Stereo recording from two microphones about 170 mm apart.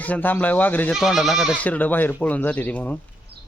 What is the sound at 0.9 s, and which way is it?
Speech, centre (ahead or behind).